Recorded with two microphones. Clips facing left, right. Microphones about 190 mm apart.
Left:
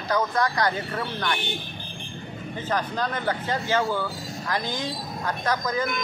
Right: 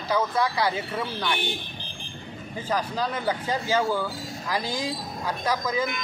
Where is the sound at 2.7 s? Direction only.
10° right (ahead or behind).